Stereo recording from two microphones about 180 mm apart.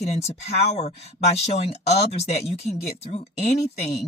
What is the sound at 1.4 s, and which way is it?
Speech, 35° left (ahead or behind).